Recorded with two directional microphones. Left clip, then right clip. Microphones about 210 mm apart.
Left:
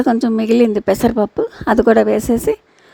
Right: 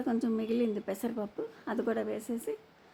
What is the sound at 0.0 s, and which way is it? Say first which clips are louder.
Speech: left 17 dB; 45° left (ahead or behind).